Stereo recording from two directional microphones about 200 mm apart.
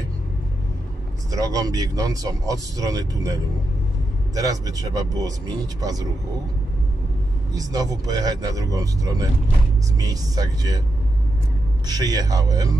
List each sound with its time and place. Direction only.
1.3 s speech: 20° right (ahead or behind)
4.4 s speech: 20° right (ahead or behind)
7.5 s speech: 20° right (ahead or behind)
11.9 s speech: 20° right (ahead or behind)